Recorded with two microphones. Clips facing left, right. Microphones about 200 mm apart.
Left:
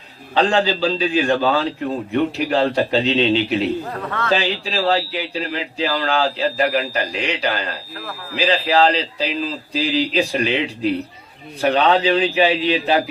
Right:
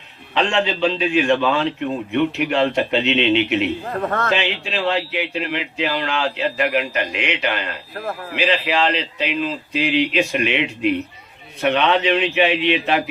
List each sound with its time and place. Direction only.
0.3 s speech: 35° left (ahead or behind)
4.0 s a man's voice: 45° right (ahead or behind)
4.3 s speech: 35° left (ahead or behind)